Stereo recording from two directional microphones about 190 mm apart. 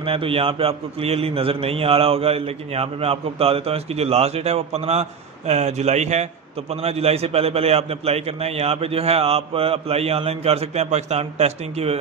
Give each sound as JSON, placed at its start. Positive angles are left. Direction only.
{"t": 0.0, "sound": "a man's voice", "side_deg": -30}